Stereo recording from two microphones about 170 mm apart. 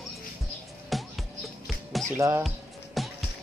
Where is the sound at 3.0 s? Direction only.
Centre (ahead or behind).